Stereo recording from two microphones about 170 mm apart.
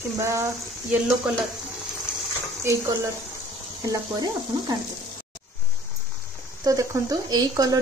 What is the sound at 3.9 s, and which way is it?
Speech, 25° right (ahead or behind).